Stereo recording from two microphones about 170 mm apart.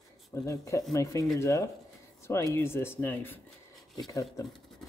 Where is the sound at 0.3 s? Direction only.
15° left (ahead or behind).